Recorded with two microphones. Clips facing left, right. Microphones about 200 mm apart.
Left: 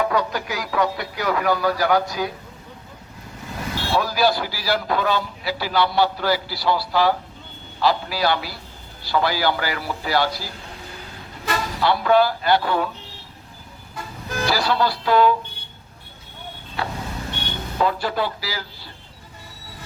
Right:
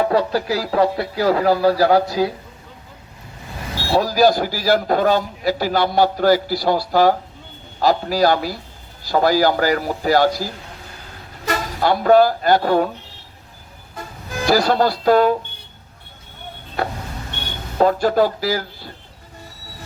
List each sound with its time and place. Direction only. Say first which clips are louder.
0.0 s speech: right 4 dB; 30° right (ahead or behind)
3.9 s a man's voice: right 5 dB; 40° right (ahead or behind)
14.4 s a man's voice: right 5 dB; 45° right (ahead or behind)
17.7 s speech: right 7 dB; 45° right (ahead or behind)